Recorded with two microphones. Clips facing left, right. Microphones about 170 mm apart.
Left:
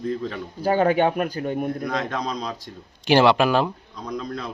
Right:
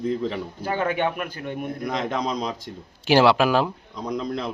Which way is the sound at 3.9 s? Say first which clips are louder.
Right 3 dB; 20° right (ahead or behind).